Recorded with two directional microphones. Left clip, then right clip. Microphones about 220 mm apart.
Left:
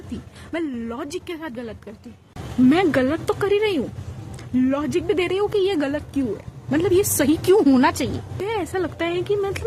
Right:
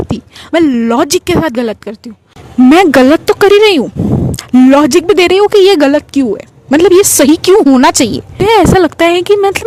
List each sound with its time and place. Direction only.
0.5 s speech: 45° right (ahead or behind)